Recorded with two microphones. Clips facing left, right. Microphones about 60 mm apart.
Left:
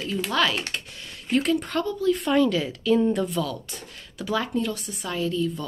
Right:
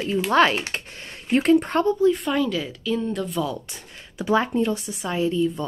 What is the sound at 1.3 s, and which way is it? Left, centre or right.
Speech, right.